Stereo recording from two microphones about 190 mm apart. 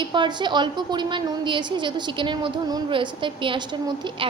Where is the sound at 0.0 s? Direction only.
25° right (ahead or behind).